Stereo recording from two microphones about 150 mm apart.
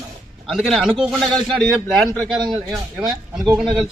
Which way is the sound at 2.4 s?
30° right (ahead or behind).